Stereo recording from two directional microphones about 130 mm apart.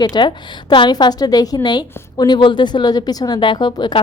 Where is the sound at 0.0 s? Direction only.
35° left (ahead or behind).